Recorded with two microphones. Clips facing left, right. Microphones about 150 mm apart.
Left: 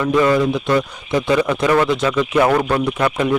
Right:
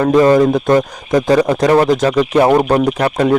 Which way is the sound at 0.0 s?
40° right (ahead or behind).